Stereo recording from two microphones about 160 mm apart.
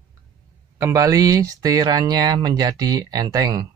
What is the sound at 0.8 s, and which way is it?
Speech, 20° right (ahead or behind).